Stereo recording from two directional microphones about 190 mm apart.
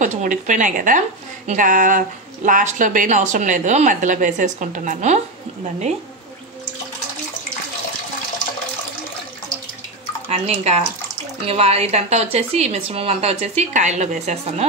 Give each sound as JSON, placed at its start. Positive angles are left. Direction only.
{"t": 0.0, "sound": "speech", "side_deg": -40}
{"t": 10.2, "sound": "speech", "side_deg": -35}